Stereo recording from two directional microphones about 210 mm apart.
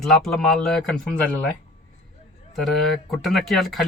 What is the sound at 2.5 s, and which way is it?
Speech, centre (ahead or behind).